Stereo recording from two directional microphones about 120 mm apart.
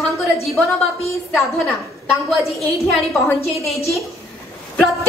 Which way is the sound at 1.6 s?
25° left (ahead or behind).